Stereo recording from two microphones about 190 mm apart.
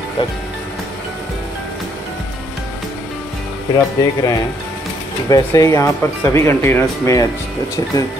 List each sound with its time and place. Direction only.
3.7 s speech: 20° left (ahead or behind)